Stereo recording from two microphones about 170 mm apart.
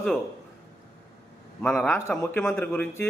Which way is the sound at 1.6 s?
5° left (ahead or behind).